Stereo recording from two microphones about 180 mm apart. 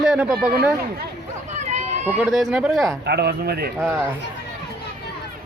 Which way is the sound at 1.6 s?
40° right (ahead or behind).